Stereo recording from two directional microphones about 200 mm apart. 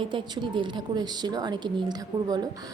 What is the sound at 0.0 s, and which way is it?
Speech, 25° right (ahead or behind).